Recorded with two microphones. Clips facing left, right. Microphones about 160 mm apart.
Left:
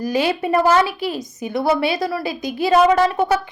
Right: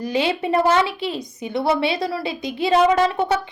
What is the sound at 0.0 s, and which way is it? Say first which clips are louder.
A woman's voice: left 2 dB; 25° right (ahead or behind).